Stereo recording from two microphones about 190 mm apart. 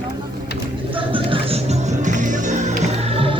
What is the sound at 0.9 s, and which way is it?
Music, 25° right (ahead or behind).